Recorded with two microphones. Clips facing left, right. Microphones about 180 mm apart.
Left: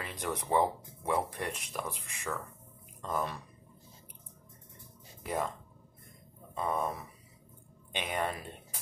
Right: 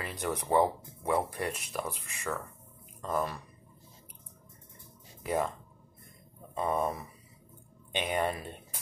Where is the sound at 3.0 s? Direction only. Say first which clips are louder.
Right 2 dB; 5° right (ahead or behind).